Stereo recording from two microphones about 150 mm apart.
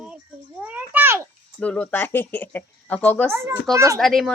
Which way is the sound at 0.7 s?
15° right (ahead or behind).